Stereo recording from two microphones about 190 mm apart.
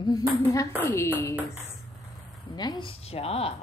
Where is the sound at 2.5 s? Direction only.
20° left (ahead or behind).